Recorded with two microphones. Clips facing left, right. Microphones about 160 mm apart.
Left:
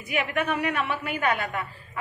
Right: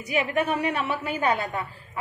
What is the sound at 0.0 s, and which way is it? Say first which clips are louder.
A woman's voice: right 2 dB; 35° right (ahead or behind).